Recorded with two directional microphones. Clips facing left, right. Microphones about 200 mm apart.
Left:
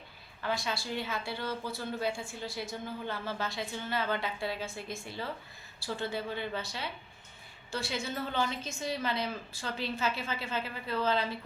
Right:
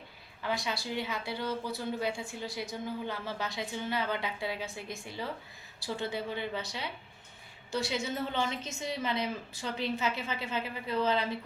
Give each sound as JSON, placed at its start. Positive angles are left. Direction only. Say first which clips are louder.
{"t": 0.4, "sound": "a woman's voice", "louder": "even", "side_deg": -15}